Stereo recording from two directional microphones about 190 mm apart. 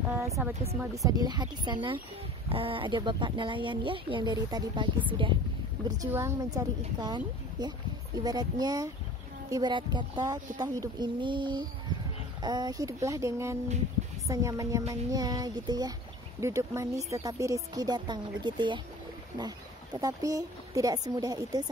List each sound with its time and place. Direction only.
0.2 s speech: 15° right (ahead or behind)